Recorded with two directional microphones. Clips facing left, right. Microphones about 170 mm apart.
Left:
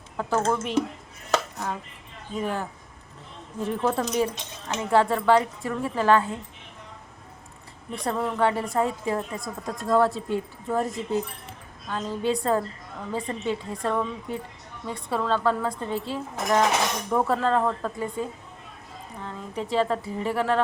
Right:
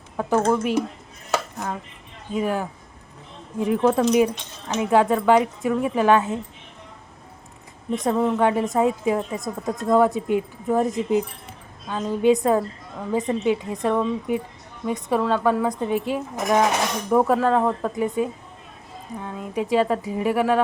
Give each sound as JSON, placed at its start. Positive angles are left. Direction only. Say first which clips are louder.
{"t": 0.2, "sound": "speech", "louder": "right 5 dB", "side_deg": -15}
{"t": 1.3, "sound": "chopping", "louder": "right 1 dB", "side_deg": -5}
{"t": 2.3, "sound": "speech", "louder": "right 5 dB", "side_deg": -10}
{"t": 7.9, "sound": "speech", "louder": "right 6 dB", "side_deg": -20}